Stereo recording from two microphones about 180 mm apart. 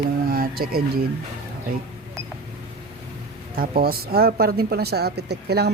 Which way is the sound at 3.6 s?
55° right (ahead or behind).